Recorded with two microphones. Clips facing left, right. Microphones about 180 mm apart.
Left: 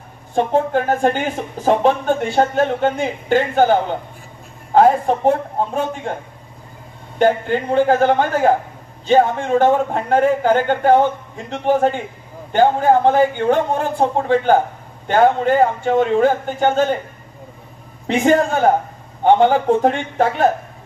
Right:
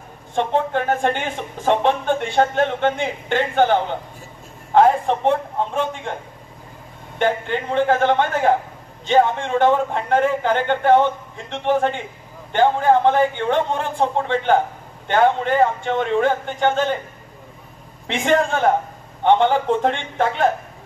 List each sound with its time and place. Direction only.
0.3 s speech: 40° left (ahead or behind)
7.2 s speech: 40° left (ahead or behind)
18.0 s speech: 40° left (ahead or behind)